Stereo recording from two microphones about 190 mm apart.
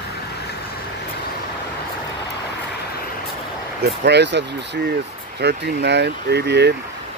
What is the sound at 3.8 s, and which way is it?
Speech, 65° right (ahead or behind).